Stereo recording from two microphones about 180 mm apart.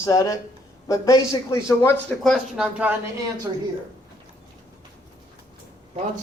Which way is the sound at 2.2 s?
5° right (ahead or behind).